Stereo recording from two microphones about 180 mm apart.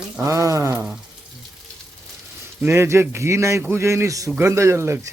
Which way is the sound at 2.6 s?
15° right (ahead or behind).